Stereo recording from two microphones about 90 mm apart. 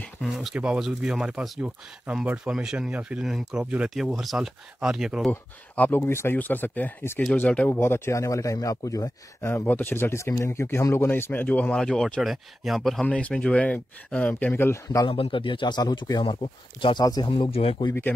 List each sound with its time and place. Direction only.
0.2 s speech: centre (ahead or behind)
5.3 s speech: 25° left (ahead or behind)
9.7 s speech: 20° left (ahead or behind)
12.2 s speech: centre (ahead or behind)
13.0 s speech: 15° left (ahead or behind)
15.0 s speech: 70° left (ahead or behind)
17.0 s speech: 45° left (ahead or behind)
17.3 s speech: 85° left